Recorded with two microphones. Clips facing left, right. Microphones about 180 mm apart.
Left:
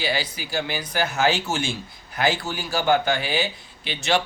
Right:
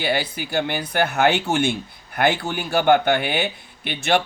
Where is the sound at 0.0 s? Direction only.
55° right (ahead or behind).